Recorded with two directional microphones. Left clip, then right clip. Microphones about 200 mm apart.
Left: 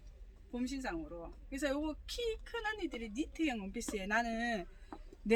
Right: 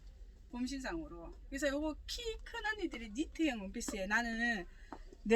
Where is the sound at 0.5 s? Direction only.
5° left (ahead or behind).